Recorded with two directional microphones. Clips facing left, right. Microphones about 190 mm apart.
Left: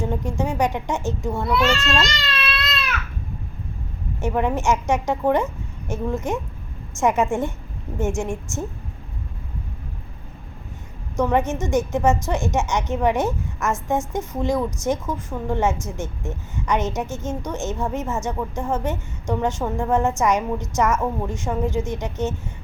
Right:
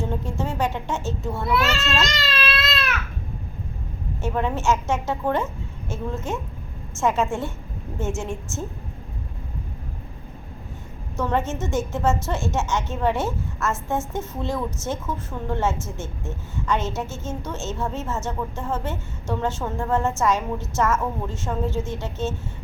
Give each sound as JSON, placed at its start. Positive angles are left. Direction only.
{"t": 0.0, "sound": "a woman's voice", "side_deg": 15}
{"t": 1.5, "sound": "speech", "side_deg": -5}
{"t": 4.2, "sound": "a woman's voice", "side_deg": 15}
{"t": 11.2, "sound": "a woman's voice", "side_deg": 15}